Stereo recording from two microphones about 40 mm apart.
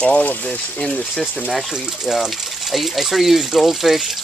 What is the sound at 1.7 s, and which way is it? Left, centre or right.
Speech, centre.